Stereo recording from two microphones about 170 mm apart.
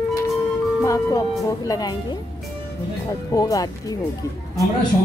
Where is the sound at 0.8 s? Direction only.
20° left (ahead or behind).